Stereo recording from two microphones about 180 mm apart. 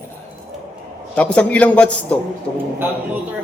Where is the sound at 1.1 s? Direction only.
5° left (ahead or behind).